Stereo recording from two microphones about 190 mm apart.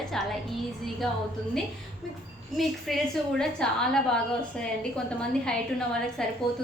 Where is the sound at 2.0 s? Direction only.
Centre (ahead or behind).